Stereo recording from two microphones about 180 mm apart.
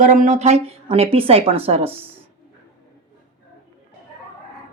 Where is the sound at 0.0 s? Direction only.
45° right (ahead or behind).